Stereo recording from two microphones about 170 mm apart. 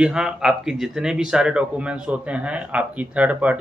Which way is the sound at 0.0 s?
5° right (ahead or behind).